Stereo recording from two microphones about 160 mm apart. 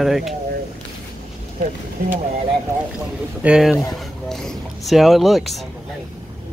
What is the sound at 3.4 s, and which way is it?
Speech, 5° right (ahead or behind).